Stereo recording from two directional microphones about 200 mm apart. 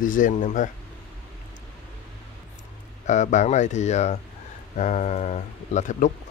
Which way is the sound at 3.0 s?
35° left (ahead or behind).